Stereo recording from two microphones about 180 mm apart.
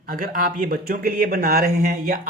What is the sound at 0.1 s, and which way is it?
Speech, 50° right (ahead or behind).